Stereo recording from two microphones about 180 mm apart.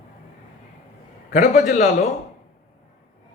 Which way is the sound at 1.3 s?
45° left (ahead or behind).